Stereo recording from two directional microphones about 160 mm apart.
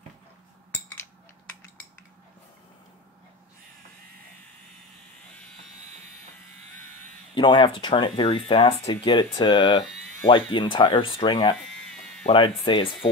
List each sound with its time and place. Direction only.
7.3 s speech: 30° left (ahead or behind)
11.9 s cat: 5° left (ahead or behind)
12.3 s speech: 35° left (ahead or behind)